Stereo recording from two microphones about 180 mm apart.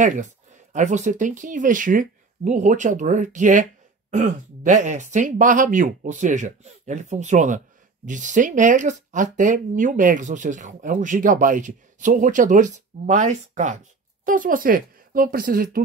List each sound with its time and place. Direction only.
0.0 s speech: 45° right (ahead or behind)